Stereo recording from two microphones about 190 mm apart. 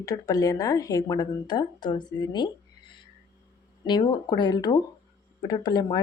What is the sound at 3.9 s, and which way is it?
A woman's voice, 25° left (ahead or behind).